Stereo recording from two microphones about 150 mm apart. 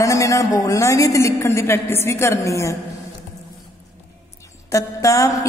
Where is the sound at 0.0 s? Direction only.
20° left (ahead or behind).